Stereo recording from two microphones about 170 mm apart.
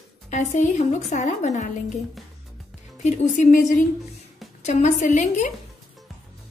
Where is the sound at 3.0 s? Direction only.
45° left (ahead or behind).